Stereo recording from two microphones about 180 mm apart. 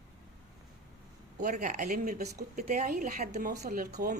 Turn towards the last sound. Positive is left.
turn(degrees=-50)  # may be behind; listen again after turning